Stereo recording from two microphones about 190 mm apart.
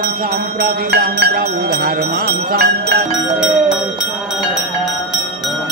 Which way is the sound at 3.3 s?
Centre (ahead or behind).